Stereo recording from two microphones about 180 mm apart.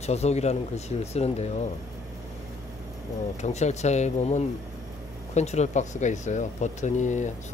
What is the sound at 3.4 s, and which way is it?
Speech, 40° left (ahead or behind).